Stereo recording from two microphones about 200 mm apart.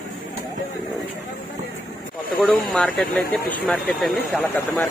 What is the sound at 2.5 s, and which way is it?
Speech, 5° left (ahead or behind).